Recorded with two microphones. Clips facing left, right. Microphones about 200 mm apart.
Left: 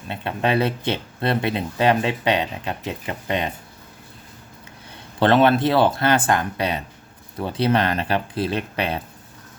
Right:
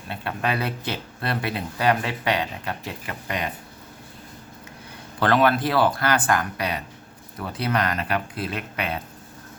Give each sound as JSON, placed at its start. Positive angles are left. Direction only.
{"t": 0.1, "sound": "speech", "side_deg": 25}
{"t": 5.2, "sound": "speech", "side_deg": 25}